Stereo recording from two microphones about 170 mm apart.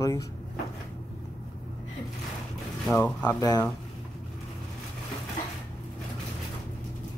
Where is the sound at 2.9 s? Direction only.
5° left (ahead or behind).